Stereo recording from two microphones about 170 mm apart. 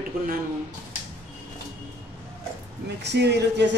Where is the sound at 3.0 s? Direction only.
90° right.